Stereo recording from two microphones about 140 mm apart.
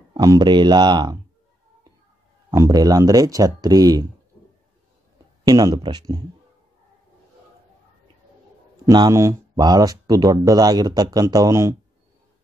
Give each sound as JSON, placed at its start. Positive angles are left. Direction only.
{"t": 0.1, "sound": "speech", "side_deg": -30}
{"t": 2.5, "sound": "speech", "side_deg": -25}
{"t": 5.5, "sound": "speech", "side_deg": -25}
{"t": 8.8, "sound": "speech", "side_deg": -25}